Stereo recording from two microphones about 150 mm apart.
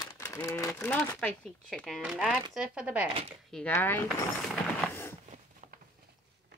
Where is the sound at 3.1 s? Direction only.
40° right (ahead or behind).